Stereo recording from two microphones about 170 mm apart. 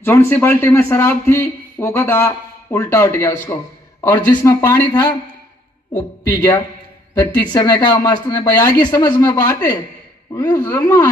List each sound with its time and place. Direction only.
0.0 s a man's voice: 10° left (ahead or behind)